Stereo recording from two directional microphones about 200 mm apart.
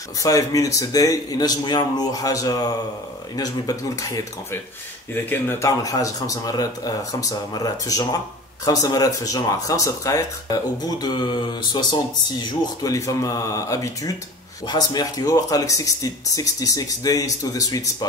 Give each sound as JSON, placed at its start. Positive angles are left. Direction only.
{"t": 0.2, "sound": "speech", "side_deg": 20}